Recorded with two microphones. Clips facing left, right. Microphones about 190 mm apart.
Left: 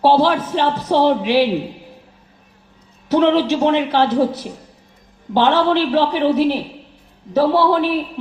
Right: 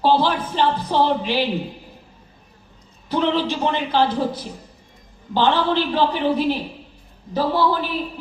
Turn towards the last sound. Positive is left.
turn(degrees=70)  # may be behind; listen again after turning